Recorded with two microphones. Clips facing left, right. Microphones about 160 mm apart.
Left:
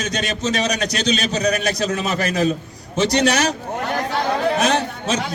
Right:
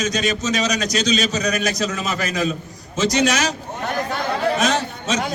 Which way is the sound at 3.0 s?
60° left (ahead or behind).